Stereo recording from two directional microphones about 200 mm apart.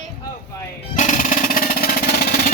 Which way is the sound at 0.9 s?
40° left (ahead or behind).